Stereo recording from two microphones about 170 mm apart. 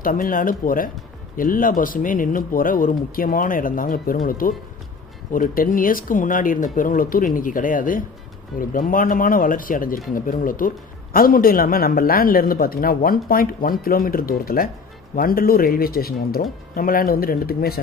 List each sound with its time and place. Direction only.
0.0 s speech: 55° left (ahead or behind)